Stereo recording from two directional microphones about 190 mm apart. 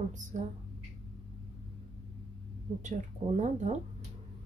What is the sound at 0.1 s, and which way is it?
Speech, 40° right (ahead or behind).